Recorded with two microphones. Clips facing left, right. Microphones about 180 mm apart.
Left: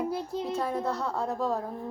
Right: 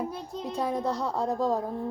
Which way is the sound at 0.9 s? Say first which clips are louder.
Right 2 dB; 15° right (ahead or behind).